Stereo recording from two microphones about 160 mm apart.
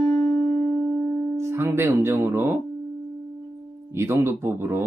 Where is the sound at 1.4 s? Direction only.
15° right (ahead or behind).